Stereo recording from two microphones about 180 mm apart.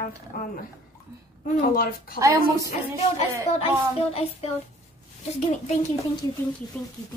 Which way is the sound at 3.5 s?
35° left (ahead or behind).